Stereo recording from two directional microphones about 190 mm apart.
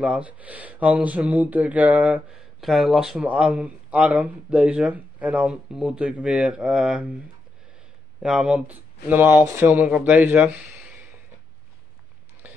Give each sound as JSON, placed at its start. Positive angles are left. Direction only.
{"t": 0.0, "sound": "speech", "side_deg": -5}
{"t": 8.2, "sound": "speech", "side_deg": -5}
{"t": 12.4, "sound": "a sound", "side_deg": -10}